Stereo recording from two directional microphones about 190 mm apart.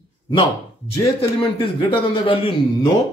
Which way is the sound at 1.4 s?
30° left (ahead or behind).